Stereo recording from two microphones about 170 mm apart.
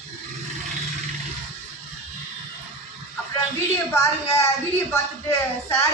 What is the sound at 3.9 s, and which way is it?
A woman's voice, 15° left (ahead or behind).